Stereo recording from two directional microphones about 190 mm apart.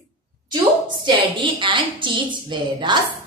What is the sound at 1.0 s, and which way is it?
A woman's voice, 25° right (ahead or behind).